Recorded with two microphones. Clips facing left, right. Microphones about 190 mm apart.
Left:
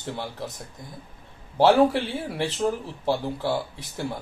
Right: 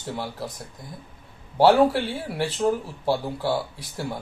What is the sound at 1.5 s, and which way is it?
A man's voice, 5° right (ahead or behind).